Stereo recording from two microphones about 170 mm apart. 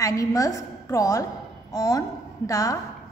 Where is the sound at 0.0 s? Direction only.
20° left (ahead or behind).